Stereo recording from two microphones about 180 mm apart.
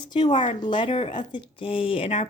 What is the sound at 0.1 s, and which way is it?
Speech, 35° left (ahead or behind).